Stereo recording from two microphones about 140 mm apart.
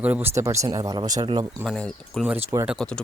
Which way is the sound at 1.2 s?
35° right (ahead or behind).